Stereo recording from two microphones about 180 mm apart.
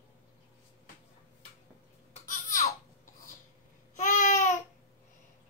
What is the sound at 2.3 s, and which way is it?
Babbling, 45° left (ahead or behind).